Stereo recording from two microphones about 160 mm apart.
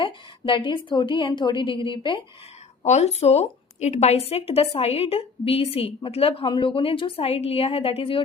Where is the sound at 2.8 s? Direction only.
45° left (ahead or behind).